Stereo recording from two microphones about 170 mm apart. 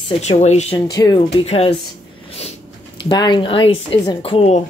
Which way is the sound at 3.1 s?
25° left (ahead or behind).